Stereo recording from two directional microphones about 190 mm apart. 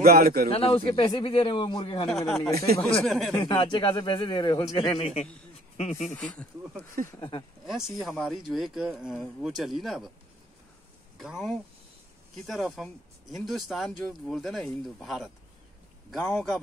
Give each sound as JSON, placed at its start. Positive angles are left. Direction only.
{"t": 0.0, "sound": "speech", "side_deg": -50}
{"t": 0.6, "sound": "a man's voice", "side_deg": 30}
{"t": 2.0, "sound": "speech", "side_deg": 0}
{"t": 3.4, "sound": "a man's voice", "side_deg": 25}
{"t": 6.1, "sound": "speech", "side_deg": 5}
{"t": 7.1, "sound": "a man's voice", "side_deg": 20}
{"t": 7.6, "sound": "speech", "side_deg": -5}
{"t": 11.1, "sound": "speech", "side_deg": 0}